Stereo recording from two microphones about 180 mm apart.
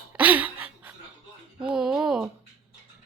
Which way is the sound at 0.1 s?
10° right (ahead or behind).